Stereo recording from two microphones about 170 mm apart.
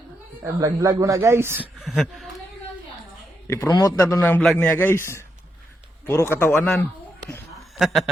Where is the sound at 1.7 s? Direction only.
Centre (ahead or behind).